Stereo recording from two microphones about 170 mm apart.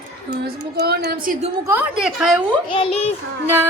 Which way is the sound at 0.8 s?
65° right (ahead or behind).